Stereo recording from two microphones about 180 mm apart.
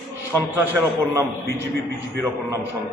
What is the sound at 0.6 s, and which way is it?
A man's voice, 10° right (ahead or behind).